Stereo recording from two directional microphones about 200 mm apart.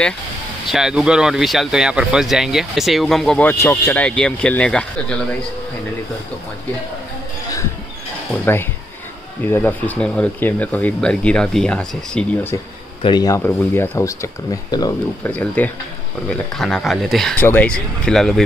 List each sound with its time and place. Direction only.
0.7 s speech: centre (ahead or behind)
9.4 s speech: 10° left (ahead or behind)
13.0 s speech: 20° left (ahead or behind)
15.3 s speech: 10° left (ahead or behind)